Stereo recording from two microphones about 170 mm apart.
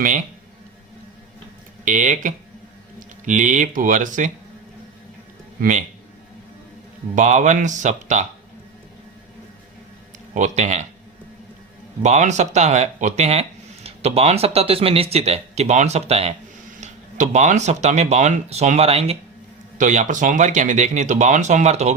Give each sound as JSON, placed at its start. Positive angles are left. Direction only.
{"t": 1.8, "sound": "speech", "side_deg": -50}
{"t": 5.5, "sound": "a man's voice", "side_deg": -45}
{"t": 7.2, "sound": "speech", "side_deg": -45}
{"t": 10.3, "sound": "speech", "side_deg": -45}
{"t": 12.0, "sound": "speech", "side_deg": -45}